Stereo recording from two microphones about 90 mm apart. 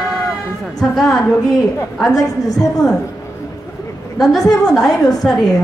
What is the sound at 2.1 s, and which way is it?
Speech, 40° left (ahead or behind).